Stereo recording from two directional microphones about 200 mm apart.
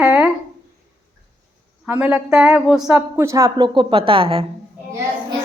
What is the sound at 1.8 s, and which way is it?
Speech, 10° right (ahead or behind).